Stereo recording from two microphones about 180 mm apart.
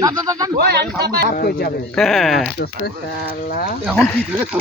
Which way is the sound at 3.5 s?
50° left (ahead or behind).